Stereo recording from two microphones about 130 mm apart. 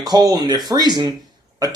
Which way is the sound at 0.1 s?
30° right (ahead or behind).